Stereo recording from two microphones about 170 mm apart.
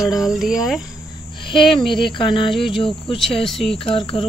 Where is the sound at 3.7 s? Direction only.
30° left (ahead or behind).